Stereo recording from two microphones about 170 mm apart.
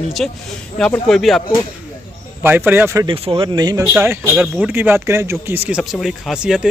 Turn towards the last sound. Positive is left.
turn(degrees=-5)  # may be behind; listen again after turning